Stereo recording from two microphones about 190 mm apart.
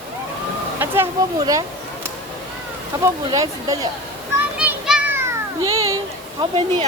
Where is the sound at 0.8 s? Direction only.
10° right (ahead or behind).